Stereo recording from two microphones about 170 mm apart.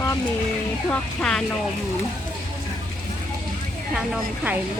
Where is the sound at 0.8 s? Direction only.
5° left (ahead or behind).